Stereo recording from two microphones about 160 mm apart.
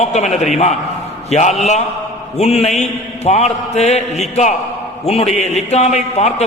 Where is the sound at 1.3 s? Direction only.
45° left (ahead or behind).